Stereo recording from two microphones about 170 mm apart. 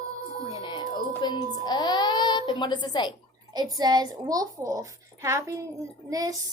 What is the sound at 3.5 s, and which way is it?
A child's voice, 25° right (ahead or behind).